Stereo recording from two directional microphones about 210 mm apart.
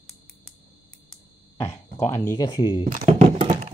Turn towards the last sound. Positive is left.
turn(degrees=-35)  # may be behind; listen again after turning